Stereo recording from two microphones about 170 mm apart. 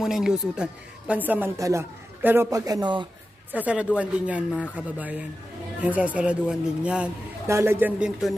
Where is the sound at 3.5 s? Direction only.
10° right (ahead or behind).